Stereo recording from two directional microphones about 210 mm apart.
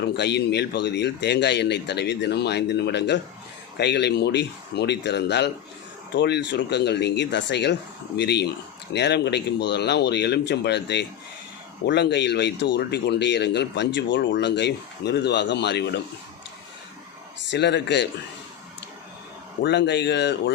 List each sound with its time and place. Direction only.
0.0 s speech: 55° left (ahead or behind)
17.5 s speech: 55° left (ahead or behind)
19.6 s speech: 55° left (ahead or behind)